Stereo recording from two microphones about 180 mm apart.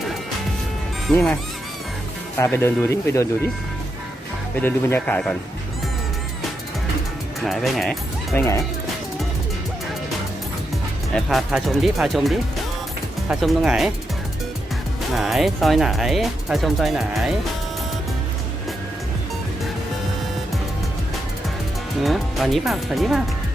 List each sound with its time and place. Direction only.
1.0 s speech: 5° left (ahead or behind)
2.4 s speech: 15° left (ahead or behind)
4.6 s speech: 10° left (ahead or behind)
7.4 s speech: centre (ahead or behind)
8.4 s speech: 15° left (ahead or behind)
11.1 s speech: centre (ahead or behind)
15.1 s speech: centre (ahead or behind)
22.0 s speech: centre (ahead or behind)